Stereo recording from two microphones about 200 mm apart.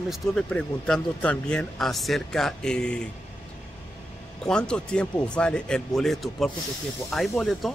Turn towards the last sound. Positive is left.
turn(degrees=0)  # may be behind; listen again after turning